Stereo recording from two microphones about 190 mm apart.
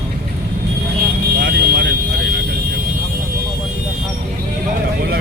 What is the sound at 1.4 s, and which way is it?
Vehicle, 55° right (ahead or behind).